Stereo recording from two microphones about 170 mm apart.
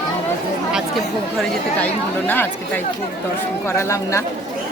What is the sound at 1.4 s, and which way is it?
Speech, 10° left (ahead or behind).